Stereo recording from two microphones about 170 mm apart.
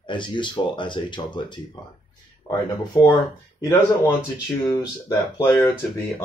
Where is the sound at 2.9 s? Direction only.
25° left (ahead or behind).